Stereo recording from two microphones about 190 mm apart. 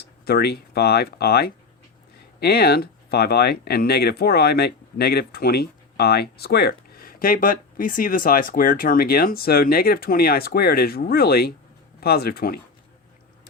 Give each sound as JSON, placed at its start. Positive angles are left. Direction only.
{"t": 0.0, "sound": "speech", "side_deg": 55}